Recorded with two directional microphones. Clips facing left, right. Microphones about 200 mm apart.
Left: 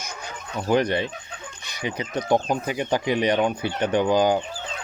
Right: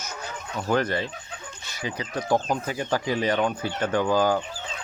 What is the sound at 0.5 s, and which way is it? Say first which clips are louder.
Speech: left 3 dB; 15° left (ahead or behind).